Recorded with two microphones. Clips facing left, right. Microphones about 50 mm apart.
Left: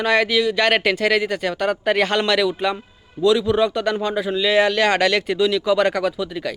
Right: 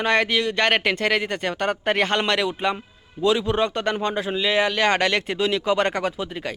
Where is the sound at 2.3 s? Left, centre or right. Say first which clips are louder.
Left 3 dB; centre.